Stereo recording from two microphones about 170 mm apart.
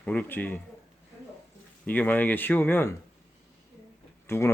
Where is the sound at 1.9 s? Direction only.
10° left (ahead or behind).